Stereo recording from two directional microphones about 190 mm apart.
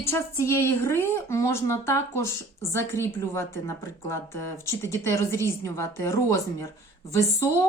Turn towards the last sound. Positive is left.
turn(degrees=15)  # may be behind; listen again after turning